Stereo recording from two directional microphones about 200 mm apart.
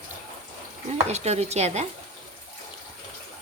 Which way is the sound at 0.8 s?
35° right (ahead or behind).